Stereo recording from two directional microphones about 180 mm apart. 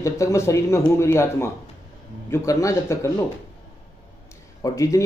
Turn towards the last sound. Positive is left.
turn(degrees=20)  # may be behind; listen again after turning